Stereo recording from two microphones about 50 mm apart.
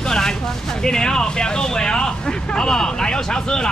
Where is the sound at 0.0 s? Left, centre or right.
Centre.